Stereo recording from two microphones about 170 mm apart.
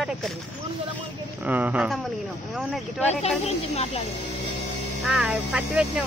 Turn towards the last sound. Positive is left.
turn(degrees=-5)  # may be behind; listen again after turning